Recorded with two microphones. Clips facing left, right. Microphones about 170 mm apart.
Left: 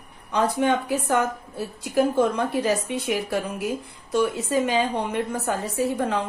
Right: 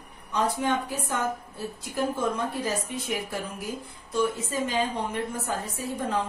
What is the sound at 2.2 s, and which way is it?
A woman's voice, 70° left (ahead or behind).